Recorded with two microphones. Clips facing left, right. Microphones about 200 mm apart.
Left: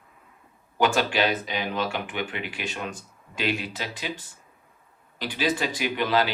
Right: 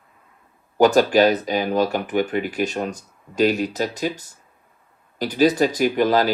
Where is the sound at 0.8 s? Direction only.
40° right (ahead or behind).